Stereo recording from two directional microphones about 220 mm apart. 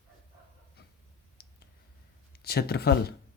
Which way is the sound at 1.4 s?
45° left (ahead or behind).